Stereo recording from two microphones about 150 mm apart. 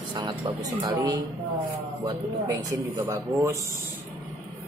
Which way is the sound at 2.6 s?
25° right (ahead or behind).